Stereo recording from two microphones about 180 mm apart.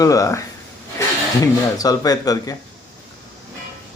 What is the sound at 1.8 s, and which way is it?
Speech, 20° left (ahead or behind).